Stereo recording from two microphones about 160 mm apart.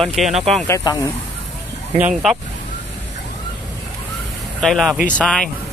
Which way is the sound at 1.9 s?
5° right (ahead or behind).